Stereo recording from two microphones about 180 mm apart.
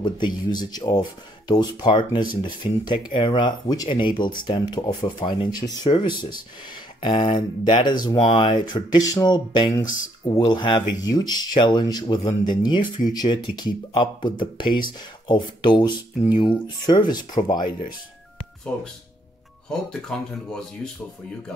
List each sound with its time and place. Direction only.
0.0 s speech: 25° left (ahead or behind)
19.7 s speech: 5° left (ahead or behind)